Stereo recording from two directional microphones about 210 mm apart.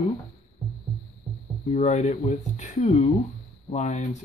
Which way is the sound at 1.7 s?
35° left (ahead or behind).